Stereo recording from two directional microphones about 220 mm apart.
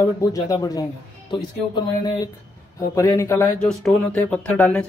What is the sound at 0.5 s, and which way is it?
Speech, 15° left (ahead or behind).